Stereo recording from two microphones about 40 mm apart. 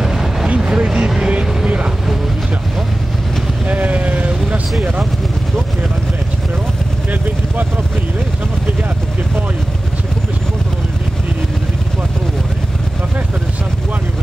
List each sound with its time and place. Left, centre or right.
0.0 s vehicle: centre
0.6 s vehicle: centre
3.6 s vehicle: right